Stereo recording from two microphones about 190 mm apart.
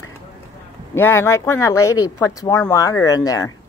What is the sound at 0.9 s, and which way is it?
Speech, 15° left (ahead or behind).